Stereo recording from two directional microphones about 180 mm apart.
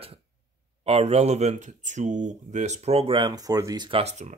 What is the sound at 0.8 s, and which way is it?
Speech, 35° right (ahead or behind).